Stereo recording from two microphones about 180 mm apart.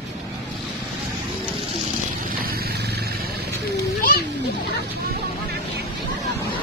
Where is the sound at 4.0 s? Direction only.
55° left (ahead or behind).